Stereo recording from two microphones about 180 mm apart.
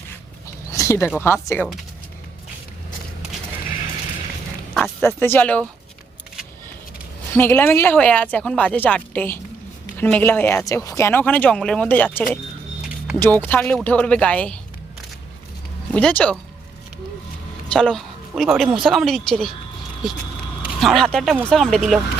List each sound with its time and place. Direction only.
0.7 s a sound: 15° left (ahead or behind)
1.2 s speech: 15° left (ahead or behind)
4.7 s oink: centre (ahead or behind)
5.0 s speech: 10° left (ahead or behind)
7.3 s speech: 10° left (ahead or behind)
15.9 s a woman's voice: 5° left (ahead or behind)
17.7 s a woman's voice: 5° left (ahead or behind)
20.8 s a woman's voice: 5° left (ahead or behind)